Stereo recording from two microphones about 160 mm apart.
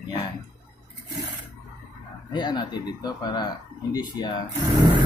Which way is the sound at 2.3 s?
25° left (ahead or behind).